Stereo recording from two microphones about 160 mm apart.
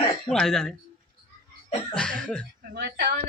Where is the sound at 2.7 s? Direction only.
90° right.